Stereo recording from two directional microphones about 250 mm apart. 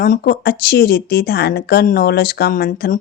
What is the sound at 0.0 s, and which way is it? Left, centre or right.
Speech, left.